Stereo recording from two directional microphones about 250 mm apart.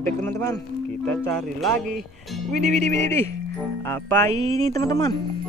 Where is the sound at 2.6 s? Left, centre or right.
Right.